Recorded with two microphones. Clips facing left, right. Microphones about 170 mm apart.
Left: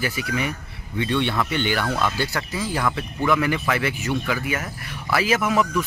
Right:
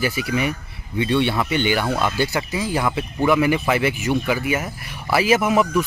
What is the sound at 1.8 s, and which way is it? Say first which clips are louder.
Speech: right 3 dB; 15° right (ahead or behind).